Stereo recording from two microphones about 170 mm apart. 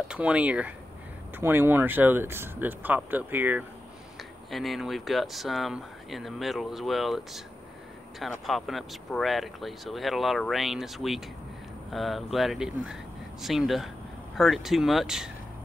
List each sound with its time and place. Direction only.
0.1 s speech: 5° right (ahead or behind)